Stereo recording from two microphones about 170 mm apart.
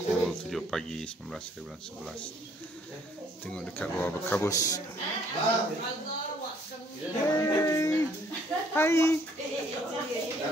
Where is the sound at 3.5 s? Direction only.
10° left (ahead or behind).